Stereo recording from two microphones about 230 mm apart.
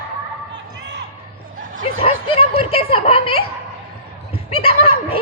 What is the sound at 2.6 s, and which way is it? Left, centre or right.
Giggle, left.